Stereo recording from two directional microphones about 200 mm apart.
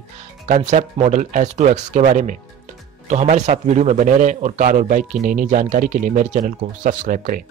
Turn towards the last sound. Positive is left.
turn(degrees=-45)  # may be behind; listen again after turning